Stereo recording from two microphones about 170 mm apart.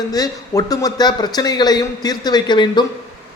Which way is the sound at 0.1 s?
20° left (ahead or behind).